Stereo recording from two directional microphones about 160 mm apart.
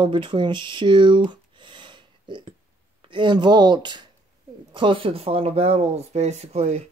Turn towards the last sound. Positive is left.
turn(degrees=-40)  # may be behind; listen again after turning